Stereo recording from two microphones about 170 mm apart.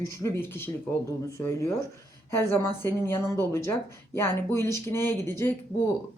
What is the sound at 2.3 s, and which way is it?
Speech, 15° left (ahead or behind).